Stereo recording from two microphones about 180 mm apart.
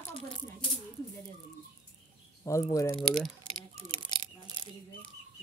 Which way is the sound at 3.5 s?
30° right (ahead or behind).